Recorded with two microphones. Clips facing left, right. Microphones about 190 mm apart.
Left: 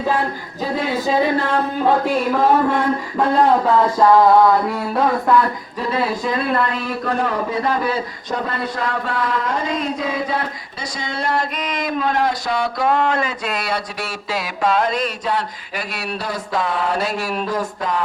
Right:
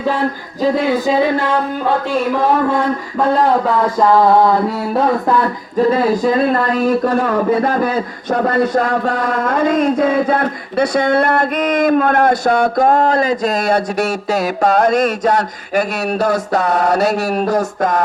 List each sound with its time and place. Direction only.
5.7 s speech: 45° right (ahead or behind)